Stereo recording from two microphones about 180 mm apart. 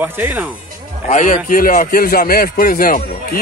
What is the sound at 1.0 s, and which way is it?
A man's voice, 45° left (ahead or behind).